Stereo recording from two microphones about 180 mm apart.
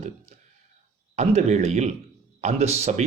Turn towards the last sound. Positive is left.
turn(degrees=-40)  # may be behind; listen again after turning